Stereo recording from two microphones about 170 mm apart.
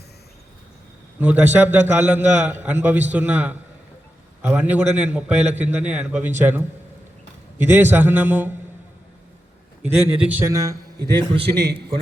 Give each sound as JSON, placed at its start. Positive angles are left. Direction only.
{"t": 1.2, "sound": "a man's voice", "side_deg": -10}
{"t": 7.6, "sound": "a man's voice", "side_deg": -10}
{"t": 9.9, "sound": "a man's voice", "side_deg": -10}
{"t": 11.5, "sound": "a man's voice", "side_deg": -80}